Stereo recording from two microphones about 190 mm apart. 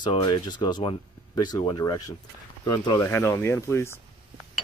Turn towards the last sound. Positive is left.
turn(degrees=15)  # may be behind; listen again after turning